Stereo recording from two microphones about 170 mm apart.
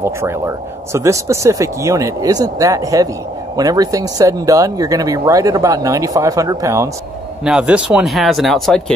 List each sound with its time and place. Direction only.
0.0 s speech: 15° right (ahead or behind)
7.4 s speech: 5° right (ahead or behind)